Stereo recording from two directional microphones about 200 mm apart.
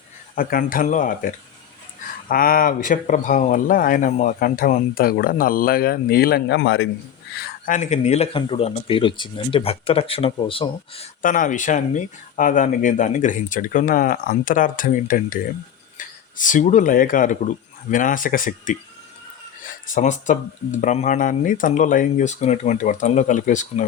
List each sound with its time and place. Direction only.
0.3 s speech: 45° left (ahead or behind); by 6.8 s 60° left (ahead or behind)
7.3 s speech: 45° left (ahead or behind); by 11.1 s 30° left (ahead or behind)
11.2 s speech: 40° left (ahead or behind)